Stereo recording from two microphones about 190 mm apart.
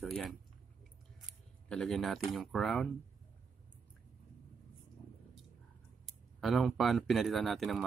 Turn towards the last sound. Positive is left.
turn(degrees=0)  # may be behind; listen again after turning